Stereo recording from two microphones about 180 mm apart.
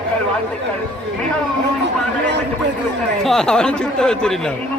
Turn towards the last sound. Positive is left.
turn(degrees=5)  # may be behind; listen again after turning